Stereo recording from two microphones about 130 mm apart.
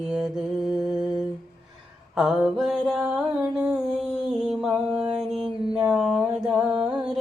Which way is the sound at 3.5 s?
5° right (ahead or behind).